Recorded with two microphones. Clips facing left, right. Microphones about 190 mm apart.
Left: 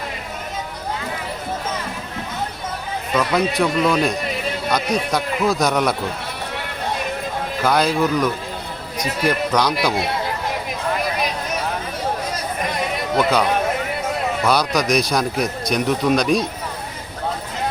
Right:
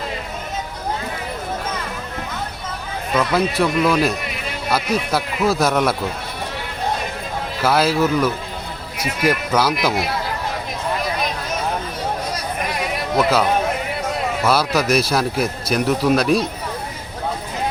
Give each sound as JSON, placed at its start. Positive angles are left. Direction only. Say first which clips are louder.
{"t": 3.3, "sound": "speech", "louder": "even", "side_deg": 0}
{"t": 7.6, "sound": "speech", "louder": "right 1 dB", "side_deg": -5}
{"t": 13.1, "sound": "speech", "louder": "right 1 dB", "side_deg": 0}